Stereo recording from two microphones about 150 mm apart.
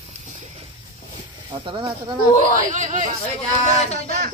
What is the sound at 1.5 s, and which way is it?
Speech, 35° right (ahead or behind).